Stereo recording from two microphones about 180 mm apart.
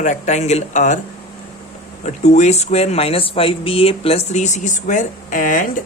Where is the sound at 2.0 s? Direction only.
40° left (ahead or behind).